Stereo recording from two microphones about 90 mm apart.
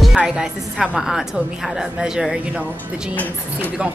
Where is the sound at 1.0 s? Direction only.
5° right (ahead or behind).